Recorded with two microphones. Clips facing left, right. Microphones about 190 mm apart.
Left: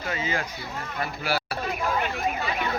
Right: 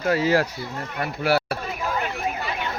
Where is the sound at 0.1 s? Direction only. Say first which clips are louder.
Right 10 dB; 70° right (ahead or behind).